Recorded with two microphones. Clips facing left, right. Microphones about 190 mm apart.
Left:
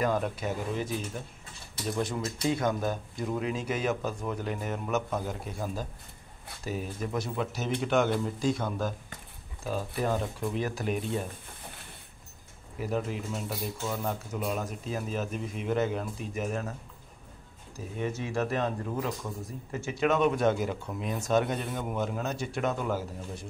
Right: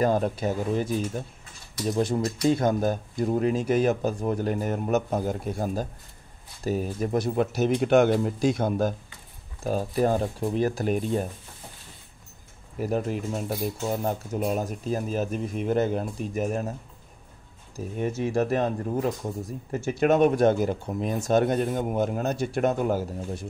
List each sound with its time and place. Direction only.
0.0 s speech: 35° right (ahead or behind)
1.9 s speech: 35° right (ahead or behind); by 8.5 s 65° right (ahead or behind)
8.5 s speech: 45° right (ahead or behind)
12.7 s speech: 45° right (ahead or behind)
17.9 s speech: 40° right (ahead or behind)